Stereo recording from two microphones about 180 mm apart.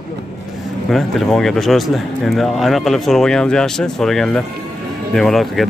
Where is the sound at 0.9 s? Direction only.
Centre (ahead or behind).